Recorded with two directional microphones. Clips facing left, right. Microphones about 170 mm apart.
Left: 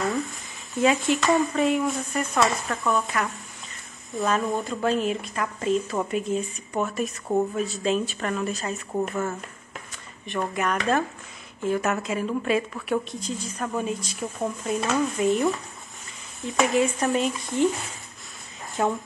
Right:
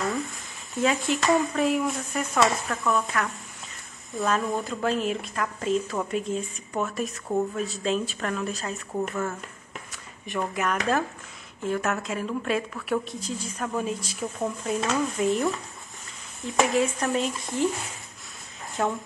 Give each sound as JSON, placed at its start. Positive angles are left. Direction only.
{"t": 0.0, "sound": "speech", "side_deg": 0}
{"t": 10.3, "sound": "speech", "side_deg": 0}